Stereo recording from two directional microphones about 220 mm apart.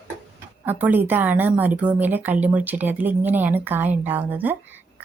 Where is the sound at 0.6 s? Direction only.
10° right (ahead or behind).